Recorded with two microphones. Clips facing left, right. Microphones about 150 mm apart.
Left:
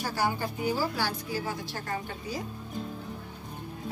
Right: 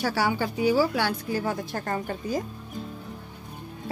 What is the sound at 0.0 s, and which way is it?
Speech, 80° right.